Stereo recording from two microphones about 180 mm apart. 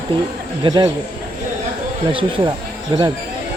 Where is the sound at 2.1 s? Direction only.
30° right (ahead or behind).